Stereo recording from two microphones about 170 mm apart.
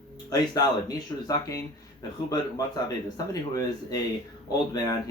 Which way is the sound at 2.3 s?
20° left (ahead or behind).